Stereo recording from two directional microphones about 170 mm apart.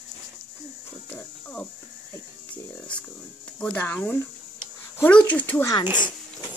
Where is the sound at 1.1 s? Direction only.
10° left (ahead or behind).